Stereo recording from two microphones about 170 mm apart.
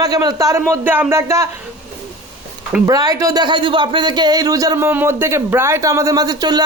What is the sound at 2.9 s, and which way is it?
Speech, 20° right (ahead or behind).